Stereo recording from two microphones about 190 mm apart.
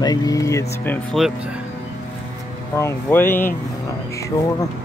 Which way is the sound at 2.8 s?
15° left (ahead or behind).